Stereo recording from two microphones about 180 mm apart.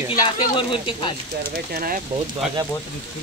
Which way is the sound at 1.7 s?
55° right (ahead or behind).